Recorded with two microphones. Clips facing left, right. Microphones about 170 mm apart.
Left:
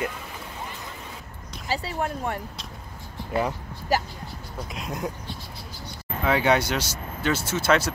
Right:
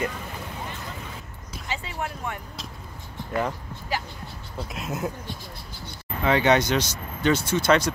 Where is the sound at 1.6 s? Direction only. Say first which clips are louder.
Left 4 dB; 35° left (ahead or behind).